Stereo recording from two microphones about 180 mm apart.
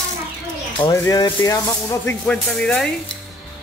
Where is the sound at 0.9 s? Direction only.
15° left (ahead or behind).